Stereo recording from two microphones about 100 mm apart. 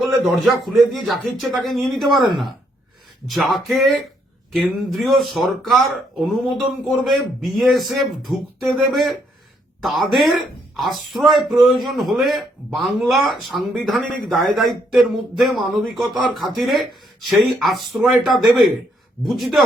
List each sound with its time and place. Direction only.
0.3 s speech: centre (ahead or behind)
3.2 s speech: centre (ahead or behind)